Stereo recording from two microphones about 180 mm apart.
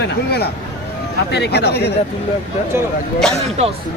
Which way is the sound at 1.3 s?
65° left (ahead or behind).